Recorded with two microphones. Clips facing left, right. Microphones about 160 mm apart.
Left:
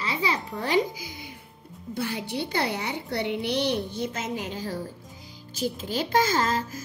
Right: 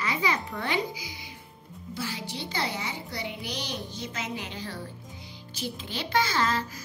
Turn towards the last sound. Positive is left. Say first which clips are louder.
# left 2 dB
turn(degrees=45)  # may be behind; listen again after turning